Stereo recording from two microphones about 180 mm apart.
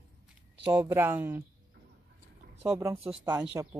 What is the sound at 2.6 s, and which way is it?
Speech, 15° right (ahead or behind).